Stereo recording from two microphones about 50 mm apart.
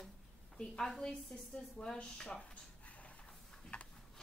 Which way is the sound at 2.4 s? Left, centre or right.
Left.